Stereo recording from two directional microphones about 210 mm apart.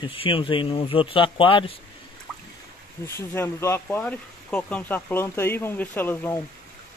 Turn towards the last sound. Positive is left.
turn(degrees=10)  # may be behind; listen again after turning